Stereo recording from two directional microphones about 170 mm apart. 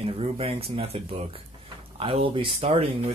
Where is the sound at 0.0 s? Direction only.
35° right (ahead or behind).